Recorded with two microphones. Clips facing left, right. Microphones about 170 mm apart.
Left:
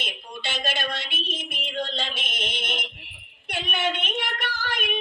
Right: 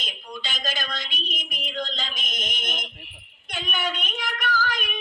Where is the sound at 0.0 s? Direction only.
30° left (ahead or behind).